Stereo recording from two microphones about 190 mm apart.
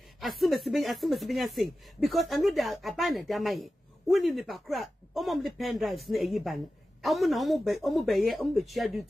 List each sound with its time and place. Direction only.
0.2 s speech: centre (ahead or behind)